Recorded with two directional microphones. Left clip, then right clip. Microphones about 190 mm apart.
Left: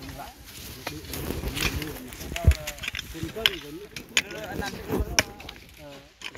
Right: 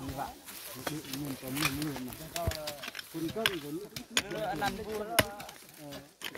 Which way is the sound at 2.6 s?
30° left (ahead or behind).